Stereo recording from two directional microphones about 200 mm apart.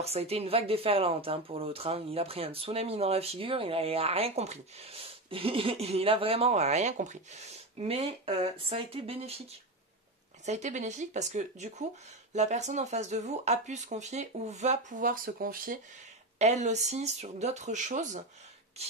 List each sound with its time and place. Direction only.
0.0 s speech: 30° right (ahead or behind)
10.4 s speech: 35° right (ahead or behind)